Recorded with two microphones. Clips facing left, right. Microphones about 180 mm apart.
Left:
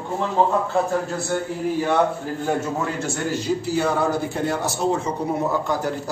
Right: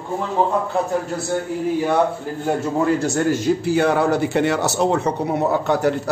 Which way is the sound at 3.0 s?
45° right (ahead or behind).